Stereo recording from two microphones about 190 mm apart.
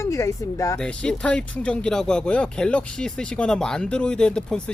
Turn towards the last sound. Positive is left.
turn(degrees=5)  # may be behind; listen again after turning